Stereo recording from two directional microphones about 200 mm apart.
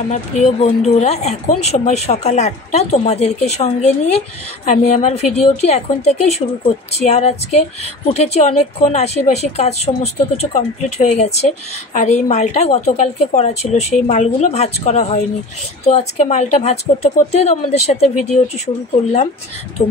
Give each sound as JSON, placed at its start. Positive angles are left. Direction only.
{"t": 0.1, "sound": "speech", "side_deg": 35}
{"t": 19.8, "sound": "speech", "side_deg": 30}